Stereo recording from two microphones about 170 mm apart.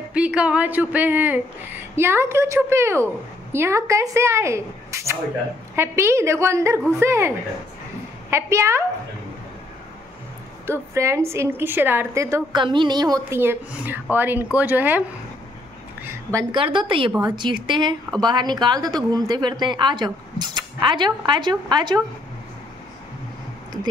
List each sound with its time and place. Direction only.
0.1 s speech: 5° right (ahead or behind)
10.7 s a woman's voice: 15° right (ahead or behind)
13.4 s speech: 10° right (ahead or behind)
16.0 s a sound: 15° right (ahead or behind)
16.5 s a woman's voice: 30° right (ahead or behind)